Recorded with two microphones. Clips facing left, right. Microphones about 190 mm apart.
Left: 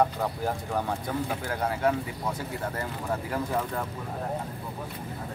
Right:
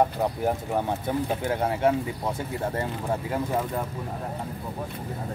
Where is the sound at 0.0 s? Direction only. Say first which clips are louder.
Right 3 dB; 20° right (ahead or behind).